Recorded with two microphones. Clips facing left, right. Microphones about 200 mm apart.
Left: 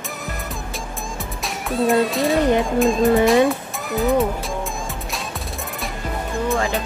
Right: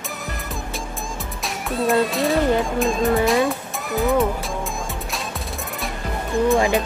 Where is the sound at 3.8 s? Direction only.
Centre (ahead or behind).